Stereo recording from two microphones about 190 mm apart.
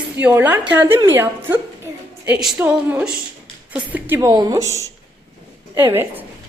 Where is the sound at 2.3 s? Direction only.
5° right (ahead or behind).